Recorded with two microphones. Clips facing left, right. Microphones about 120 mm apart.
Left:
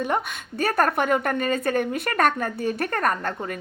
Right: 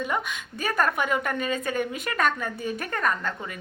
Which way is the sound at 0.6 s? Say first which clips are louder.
Left 4 dB; 45° left (ahead or behind).